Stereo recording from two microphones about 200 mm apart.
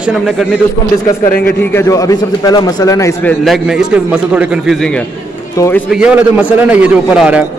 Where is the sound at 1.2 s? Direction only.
50° left (ahead or behind).